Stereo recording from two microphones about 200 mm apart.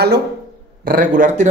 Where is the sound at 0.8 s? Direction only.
45° right (ahead or behind).